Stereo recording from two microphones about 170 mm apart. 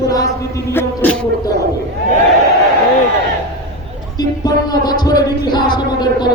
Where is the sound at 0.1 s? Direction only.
20° left (ahead or behind).